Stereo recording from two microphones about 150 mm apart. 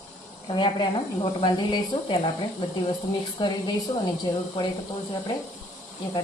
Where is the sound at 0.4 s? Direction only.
30° left (ahead or behind).